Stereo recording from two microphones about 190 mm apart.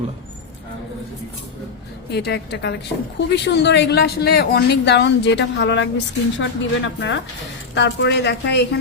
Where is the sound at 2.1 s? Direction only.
60° left (ahead or behind).